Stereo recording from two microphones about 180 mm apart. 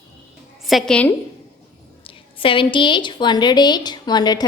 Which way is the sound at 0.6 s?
Centre (ahead or behind).